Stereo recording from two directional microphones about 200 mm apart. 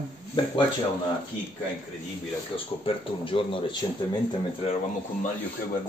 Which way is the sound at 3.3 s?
25° left (ahead or behind).